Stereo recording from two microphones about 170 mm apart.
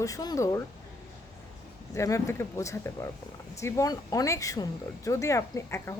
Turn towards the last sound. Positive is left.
turn(degrees=15)  # may be behind; listen again after turning